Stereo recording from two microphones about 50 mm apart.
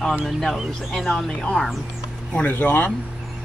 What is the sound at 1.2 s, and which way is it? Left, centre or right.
Speech, centre.